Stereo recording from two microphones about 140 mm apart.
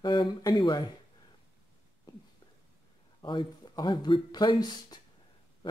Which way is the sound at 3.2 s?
35° left (ahead or behind).